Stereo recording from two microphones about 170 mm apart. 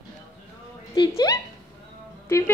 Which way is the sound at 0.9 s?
20° left (ahead or behind).